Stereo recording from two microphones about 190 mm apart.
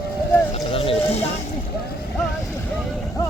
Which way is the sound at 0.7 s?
30° left (ahead or behind).